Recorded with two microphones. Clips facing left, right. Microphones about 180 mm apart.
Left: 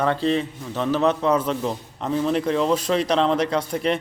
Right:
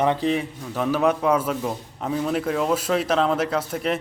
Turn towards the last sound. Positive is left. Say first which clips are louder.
# left 2 dB
turn(degrees=0)  # may be behind; listen again after turning